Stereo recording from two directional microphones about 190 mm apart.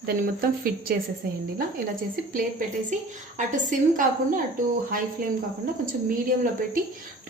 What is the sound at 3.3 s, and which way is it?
Speech, 40° right (ahead or behind).